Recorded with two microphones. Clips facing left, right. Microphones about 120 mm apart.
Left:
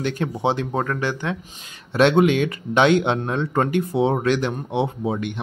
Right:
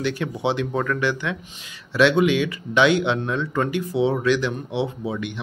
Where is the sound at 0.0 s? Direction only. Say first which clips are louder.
Left 1 dB; 45° left (ahead or behind).